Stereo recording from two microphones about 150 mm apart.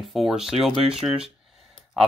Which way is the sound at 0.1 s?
5° right (ahead or behind).